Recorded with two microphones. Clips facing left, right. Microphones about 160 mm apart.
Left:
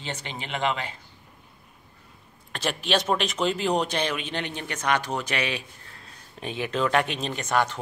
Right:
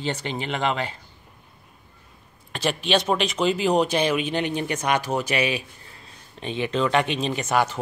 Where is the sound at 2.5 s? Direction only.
Centre (ahead or behind).